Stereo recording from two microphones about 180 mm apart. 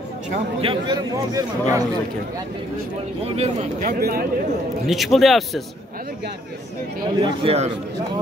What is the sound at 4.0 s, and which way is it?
Speech, 55° right (ahead or behind).